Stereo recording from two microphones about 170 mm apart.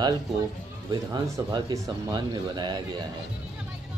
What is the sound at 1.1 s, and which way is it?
Speech, 25° right (ahead or behind).